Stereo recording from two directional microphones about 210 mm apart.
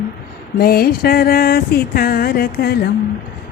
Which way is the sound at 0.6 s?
45° left (ahead or behind).